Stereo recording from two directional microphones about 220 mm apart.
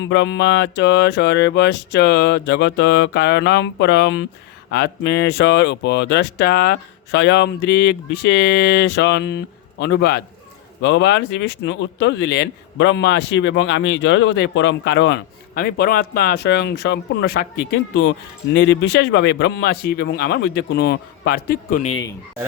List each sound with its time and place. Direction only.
0.0 s speech: 55° left (ahead or behind); by 21.9 s 35° left (ahead or behind)